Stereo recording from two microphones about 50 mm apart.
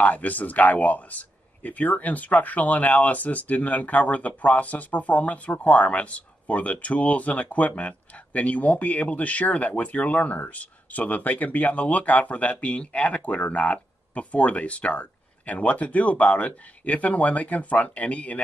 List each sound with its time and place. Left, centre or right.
0.0 s speech: left